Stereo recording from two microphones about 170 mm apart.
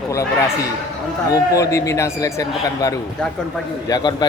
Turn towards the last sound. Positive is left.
turn(degrees=25)  # may be behind; listen again after turning